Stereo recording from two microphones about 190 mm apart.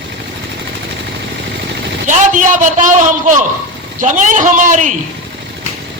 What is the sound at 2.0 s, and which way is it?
A man's voice, 40° right (ahead or behind).